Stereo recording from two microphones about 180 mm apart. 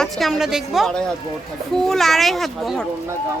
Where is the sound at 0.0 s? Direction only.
Centre (ahead or behind).